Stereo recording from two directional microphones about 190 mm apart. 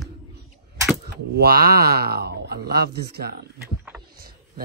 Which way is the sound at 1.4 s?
50° right (ahead or behind).